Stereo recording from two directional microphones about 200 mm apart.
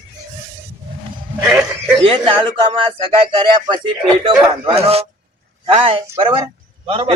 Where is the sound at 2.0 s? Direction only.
25° right (ahead or behind).